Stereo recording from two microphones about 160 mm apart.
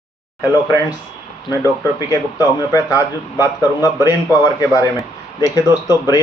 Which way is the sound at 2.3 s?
20° left (ahead or behind).